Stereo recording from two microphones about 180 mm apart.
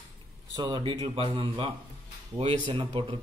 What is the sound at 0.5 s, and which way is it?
A man's voice, 25° right (ahead or behind).